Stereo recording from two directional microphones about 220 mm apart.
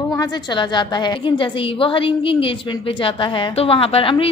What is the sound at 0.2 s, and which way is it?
A woman's voice, 20° left (ahead or behind).